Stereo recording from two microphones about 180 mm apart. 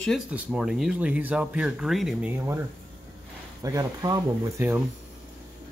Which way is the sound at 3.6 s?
20° right (ahead or behind).